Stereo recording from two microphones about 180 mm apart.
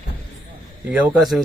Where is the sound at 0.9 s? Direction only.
5° right (ahead or behind).